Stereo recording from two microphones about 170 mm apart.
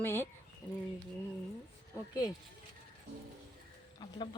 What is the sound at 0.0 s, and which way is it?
Speech, 15° left (ahead or behind).